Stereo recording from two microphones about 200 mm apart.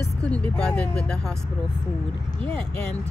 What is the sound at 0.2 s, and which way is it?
Speech, 5° left (ahead or behind).